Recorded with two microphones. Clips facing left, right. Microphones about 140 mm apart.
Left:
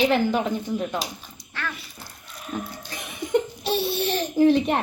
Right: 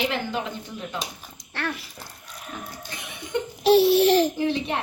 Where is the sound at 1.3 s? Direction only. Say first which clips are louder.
Right 5 dB; 80° right.